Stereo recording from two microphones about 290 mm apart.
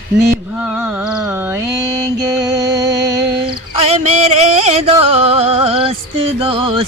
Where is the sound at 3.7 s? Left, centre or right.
Right.